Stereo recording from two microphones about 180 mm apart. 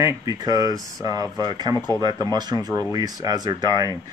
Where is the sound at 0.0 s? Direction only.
20° right (ahead or behind).